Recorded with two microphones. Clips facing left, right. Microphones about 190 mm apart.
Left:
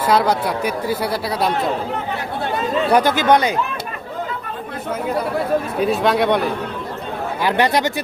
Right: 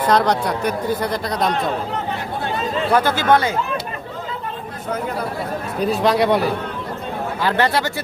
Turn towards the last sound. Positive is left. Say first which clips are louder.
# left 2 dB
turn(degrees=15)  # may be behind; listen again after turning